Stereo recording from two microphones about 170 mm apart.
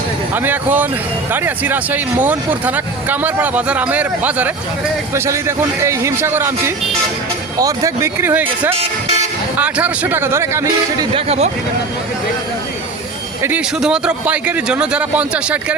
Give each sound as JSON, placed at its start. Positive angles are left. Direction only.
{"t": 0.3, "sound": "speech", "side_deg": -10}
{"t": 9.6, "sound": "speech", "side_deg": -10}
{"t": 11.3, "sound": "speech", "side_deg": -40}
{"t": 13.4, "sound": "speech", "side_deg": -10}